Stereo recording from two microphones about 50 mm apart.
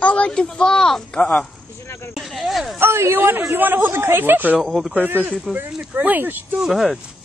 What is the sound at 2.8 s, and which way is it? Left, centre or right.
Speech, right.